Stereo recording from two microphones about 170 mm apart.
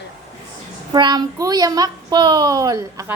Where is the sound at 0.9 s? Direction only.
25° right (ahead or behind).